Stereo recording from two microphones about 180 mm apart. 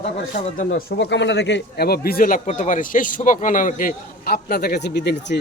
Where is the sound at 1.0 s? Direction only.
90° left; by 5.3 s 70° left (ahead or behind).